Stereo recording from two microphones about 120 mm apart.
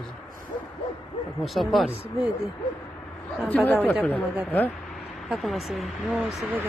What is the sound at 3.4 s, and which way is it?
Speech, 15° left (ahead or behind).